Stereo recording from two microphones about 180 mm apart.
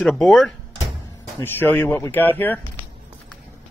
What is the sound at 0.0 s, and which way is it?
Speech, centre (ahead or behind).